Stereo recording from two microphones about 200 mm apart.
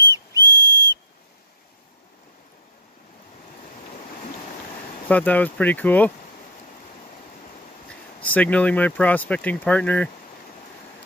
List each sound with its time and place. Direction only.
0.1 s whistle: 20° left (ahead or behind)
5.0 s speech: 10° left (ahead or behind)
7.9 s speech: 5° left (ahead or behind)